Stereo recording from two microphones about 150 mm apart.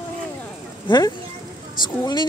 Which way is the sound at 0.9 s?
30° left (ahead or behind).